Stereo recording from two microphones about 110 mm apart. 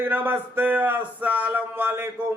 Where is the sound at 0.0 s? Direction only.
15° right (ahead or behind).